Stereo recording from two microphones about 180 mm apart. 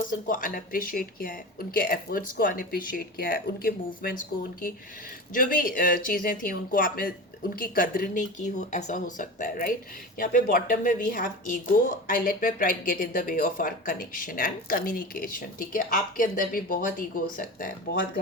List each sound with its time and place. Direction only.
0.1 s a woman's voice: 50° left (ahead or behind)
5.3 s a woman's voice: 50° left (ahead or behind)